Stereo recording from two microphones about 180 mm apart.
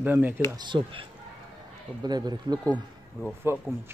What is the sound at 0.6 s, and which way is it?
A man's voice, 25° right (ahead or behind).